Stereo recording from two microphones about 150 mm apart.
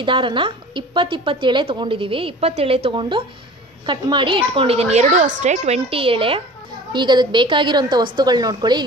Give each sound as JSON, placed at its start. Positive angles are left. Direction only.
{"t": 0.0, "sound": "a woman's voice", "side_deg": -35}